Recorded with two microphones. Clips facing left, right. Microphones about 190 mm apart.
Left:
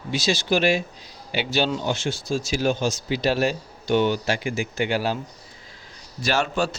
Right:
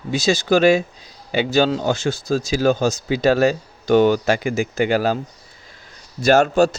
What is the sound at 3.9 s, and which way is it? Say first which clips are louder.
Speech: right 6 dB; 45° right (ahead or behind).